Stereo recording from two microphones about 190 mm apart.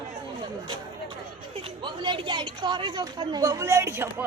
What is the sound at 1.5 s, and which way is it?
Speech, 25° right (ahead or behind).